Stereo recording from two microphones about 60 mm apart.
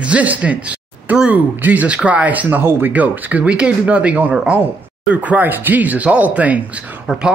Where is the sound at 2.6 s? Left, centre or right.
Right.